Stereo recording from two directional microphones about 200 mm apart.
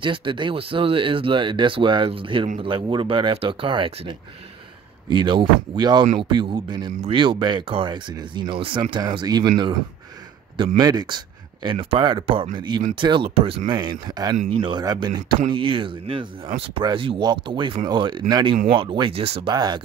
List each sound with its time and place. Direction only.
0.0 s speech: 25° right (ahead or behind)
5.1 s speech: 25° right (ahead or behind)
10.8 s speech: 20° right (ahead or behind)